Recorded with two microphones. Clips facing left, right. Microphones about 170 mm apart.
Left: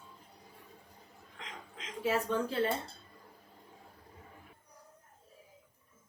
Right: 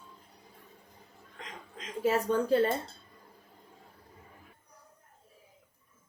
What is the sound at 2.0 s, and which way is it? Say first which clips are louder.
Speech: right 4 dB; 45° right (ahead or behind).